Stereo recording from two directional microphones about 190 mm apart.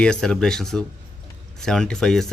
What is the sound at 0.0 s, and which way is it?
Speech, 5° left (ahead or behind).